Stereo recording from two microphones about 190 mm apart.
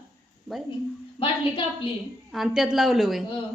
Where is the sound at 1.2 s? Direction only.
30° left (ahead or behind).